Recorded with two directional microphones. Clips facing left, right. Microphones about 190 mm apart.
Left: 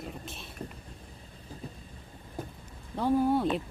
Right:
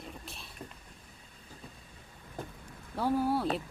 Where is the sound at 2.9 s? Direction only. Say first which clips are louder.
Left 4 dB; 5° right (ahead or behind).